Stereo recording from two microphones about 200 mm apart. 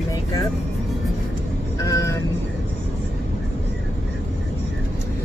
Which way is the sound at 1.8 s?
15° left (ahead or behind).